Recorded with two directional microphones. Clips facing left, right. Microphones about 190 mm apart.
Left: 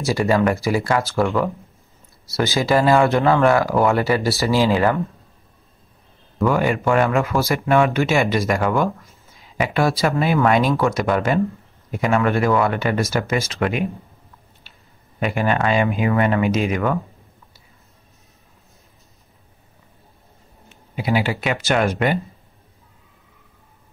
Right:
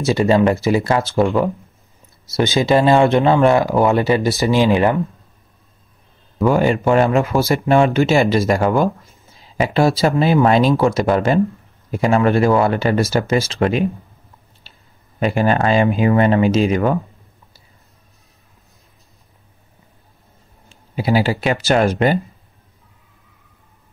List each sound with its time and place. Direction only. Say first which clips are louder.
0.0 s speech: right 4 dB; 20° right (ahead or behind)
6.4 s speech: right 3 dB; 30° right (ahead or behind)
14.7 s clicking: right 5 dB; 30° right (ahead or behind)
15.1 s speech: right 4 dB; 35° right (ahead or behind)
20.6 s speech: right 4 dB; 35° right (ahead or behind)